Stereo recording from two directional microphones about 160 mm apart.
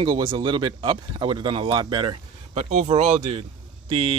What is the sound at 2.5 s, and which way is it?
Speech, 45° right (ahead or behind).